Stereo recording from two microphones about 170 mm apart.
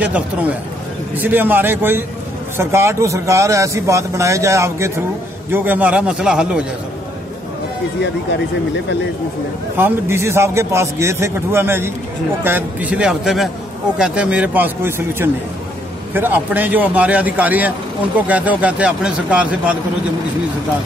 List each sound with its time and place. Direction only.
0.0 s a man's voice: 10° right (ahead or behind)
9.8 s a man's voice: 15° right (ahead or behind)